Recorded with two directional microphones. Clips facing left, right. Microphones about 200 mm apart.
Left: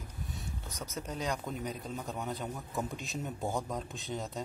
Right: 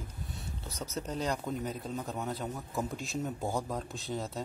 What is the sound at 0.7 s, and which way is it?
Speech, 15° left (ahead or behind).